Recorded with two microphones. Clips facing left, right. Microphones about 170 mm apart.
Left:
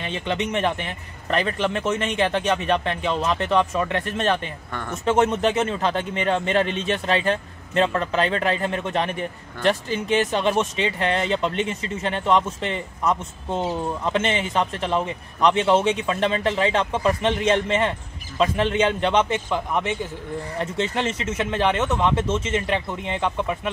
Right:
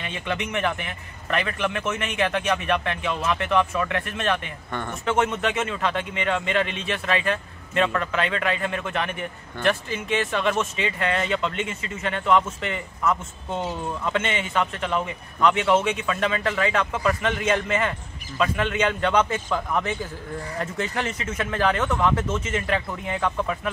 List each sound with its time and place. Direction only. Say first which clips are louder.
0.0 s speech: left 3 dB; 30° left (ahead or behind)
14.0 s a man's voice: left 2 dB; 30° left (ahead or behind)